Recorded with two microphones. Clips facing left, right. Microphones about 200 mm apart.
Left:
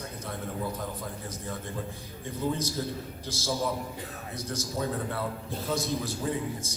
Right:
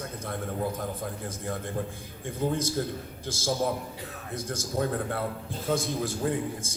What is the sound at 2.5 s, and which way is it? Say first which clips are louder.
A man's voice: right 2 dB; 50° right (ahead or behind).